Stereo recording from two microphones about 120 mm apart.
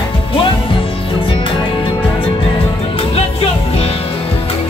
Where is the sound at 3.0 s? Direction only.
55° left (ahead or behind).